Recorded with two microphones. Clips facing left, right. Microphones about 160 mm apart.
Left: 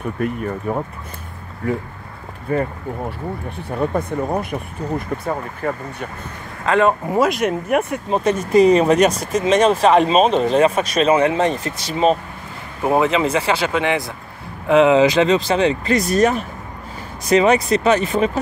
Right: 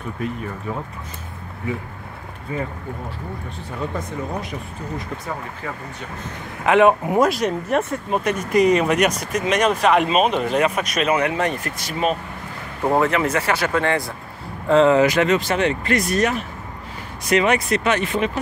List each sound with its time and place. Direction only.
0.2 s speech: 50° left (ahead or behind)
2.5 s speech: 55° left (ahead or behind)
3.9 s speech: 55° left (ahead or behind)
6.6 s speech: 15° right (ahead or behind)
7.2 s speech: centre (ahead or behind)
8.1 s speech: 25° left (ahead or behind)
12.8 s speech: 15° left (ahead or behind)
16.1 s speech: 40° left (ahead or behind)